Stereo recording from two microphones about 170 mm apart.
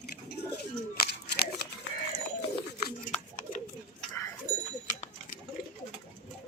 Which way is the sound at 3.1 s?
45° left (ahead or behind).